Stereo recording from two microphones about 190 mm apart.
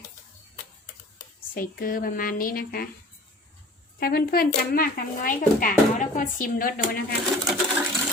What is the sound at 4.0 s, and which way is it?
Speech, 55° left (ahead or behind).